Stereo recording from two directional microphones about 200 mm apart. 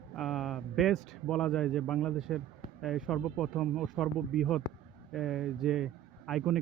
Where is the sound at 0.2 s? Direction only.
Centre (ahead or behind).